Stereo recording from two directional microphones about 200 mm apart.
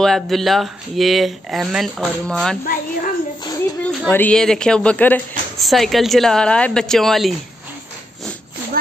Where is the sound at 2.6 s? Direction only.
45° left (ahead or behind).